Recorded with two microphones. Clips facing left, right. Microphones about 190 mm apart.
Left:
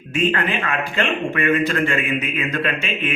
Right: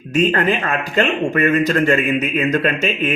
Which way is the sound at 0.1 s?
40° right (ahead or behind).